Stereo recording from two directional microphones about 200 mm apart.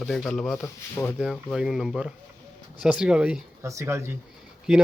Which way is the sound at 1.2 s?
Centre (ahead or behind).